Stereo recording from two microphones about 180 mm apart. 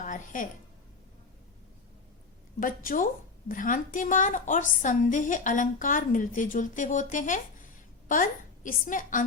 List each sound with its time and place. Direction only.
0.0 s a woman's voice: 45° left (ahead or behind)
2.6 s a woman's voice: 50° left (ahead or behind)
8.0 s a sound: 45° left (ahead or behind)
8.9 s a woman's voice: 45° left (ahead or behind)